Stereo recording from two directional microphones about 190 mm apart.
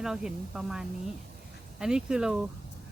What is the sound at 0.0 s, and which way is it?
A woman's voice, 5° right (ahead or behind).